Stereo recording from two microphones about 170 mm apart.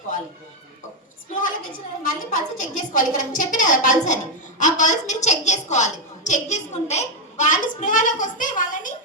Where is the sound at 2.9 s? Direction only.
50° left (ahead or behind).